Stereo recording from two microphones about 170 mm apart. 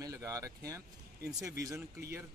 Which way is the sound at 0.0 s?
20° right (ahead or behind).